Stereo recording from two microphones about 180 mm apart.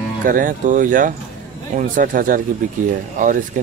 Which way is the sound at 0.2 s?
50° right (ahead or behind).